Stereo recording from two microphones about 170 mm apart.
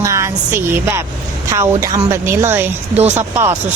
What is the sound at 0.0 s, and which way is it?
A woman's voice, 15° right (ahead or behind).